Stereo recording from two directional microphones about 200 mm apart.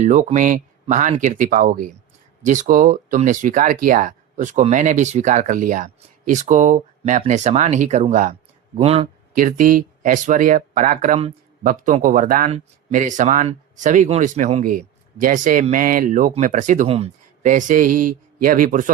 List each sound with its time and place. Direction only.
0.0 s speech: 40° right (ahead or behind)
9.3 s speech: 40° right (ahead or behind)